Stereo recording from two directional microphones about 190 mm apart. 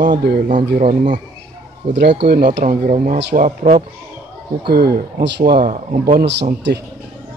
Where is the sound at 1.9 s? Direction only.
65° right (ahead or behind).